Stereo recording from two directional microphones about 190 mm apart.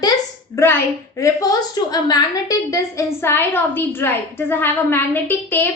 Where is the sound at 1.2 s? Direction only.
15° left (ahead or behind).